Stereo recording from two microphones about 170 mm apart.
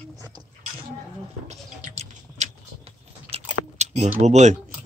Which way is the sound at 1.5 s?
40° right (ahead or behind).